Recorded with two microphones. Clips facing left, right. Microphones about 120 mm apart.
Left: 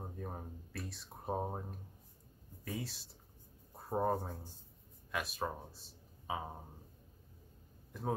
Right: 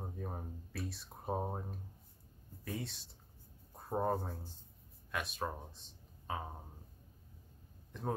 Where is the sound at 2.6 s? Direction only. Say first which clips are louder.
Even; centre (ahead or behind).